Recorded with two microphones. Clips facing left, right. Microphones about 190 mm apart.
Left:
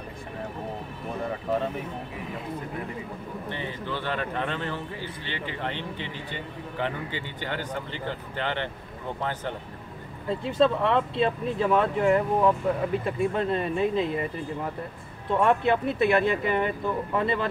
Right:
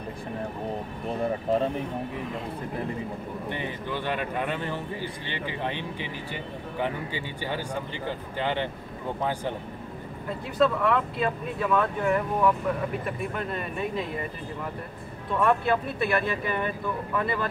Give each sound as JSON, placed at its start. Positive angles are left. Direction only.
{"t": 3.4, "sound": "speech", "side_deg": -15}
{"t": 10.4, "sound": "speech", "side_deg": 30}
{"t": 15.3, "sound": "speech", "side_deg": 25}